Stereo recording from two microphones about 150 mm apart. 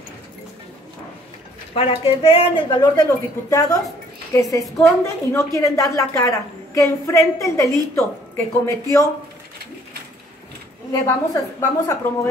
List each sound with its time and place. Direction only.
1.8 s a woman's voice: 40° left (ahead or behind); by 9.0 s 20° left (ahead or behind)
10.9 s a woman's voice: 25° left (ahead or behind)